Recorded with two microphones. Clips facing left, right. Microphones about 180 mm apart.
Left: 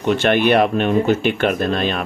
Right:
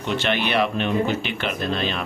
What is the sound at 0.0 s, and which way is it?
Speech, 50° left (ahead or behind).